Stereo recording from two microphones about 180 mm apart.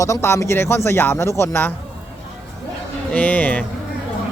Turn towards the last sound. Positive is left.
turn(degrees=10)  # may be behind; listen again after turning